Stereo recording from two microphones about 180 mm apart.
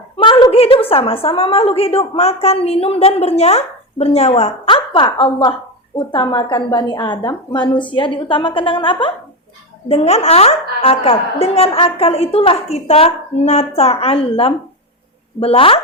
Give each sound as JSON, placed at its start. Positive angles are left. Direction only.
{"t": 0.2, "sound": "a woman's voice", "side_deg": 25}